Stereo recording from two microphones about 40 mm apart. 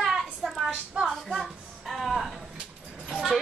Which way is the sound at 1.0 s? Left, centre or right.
Right.